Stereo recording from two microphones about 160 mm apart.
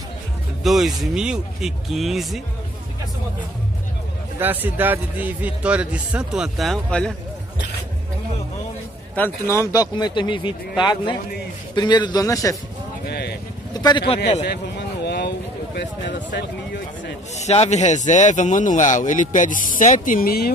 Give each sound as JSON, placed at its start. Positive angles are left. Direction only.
{"t": 0.7, "sound": "speech", "side_deg": 0}
{"t": 4.4, "sound": "a man's voice", "side_deg": -10}
{"t": 9.1, "sound": "speech", "side_deg": 15}
{"t": 13.0, "sound": "a sound", "side_deg": 90}
{"t": 13.7, "sound": "speech", "side_deg": 25}
{"t": 15.0, "sound": "a sound", "side_deg": 90}
{"t": 17.4, "sound": "speech", "side_deg": 45}